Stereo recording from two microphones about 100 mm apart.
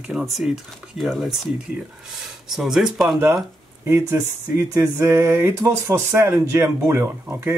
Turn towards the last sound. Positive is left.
turn(degrees=-25)  # may be behind; listen again after turning